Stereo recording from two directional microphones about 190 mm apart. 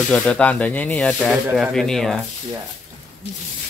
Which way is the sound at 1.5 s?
5° right (ahead or behind).